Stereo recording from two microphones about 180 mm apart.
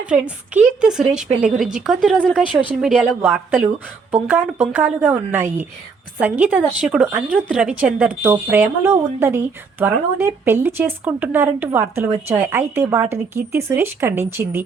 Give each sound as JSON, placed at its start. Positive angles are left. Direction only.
{"t": 0.0, "sound": "a woman's voice", "side_deg": -5}